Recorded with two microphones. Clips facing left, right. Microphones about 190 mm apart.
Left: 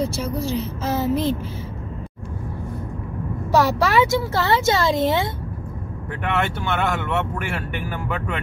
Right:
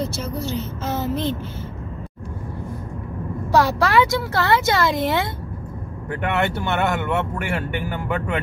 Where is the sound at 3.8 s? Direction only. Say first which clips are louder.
Even; 20° left (ahead or behind).